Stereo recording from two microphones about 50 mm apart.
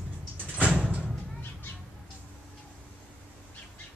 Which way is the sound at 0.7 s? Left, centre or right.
Right.